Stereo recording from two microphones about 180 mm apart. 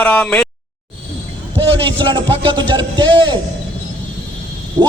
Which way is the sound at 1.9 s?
25° right (ahead or behind).